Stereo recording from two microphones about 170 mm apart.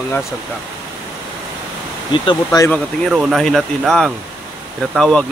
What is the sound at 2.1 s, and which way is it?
Speech, 25° left (ahead or behind).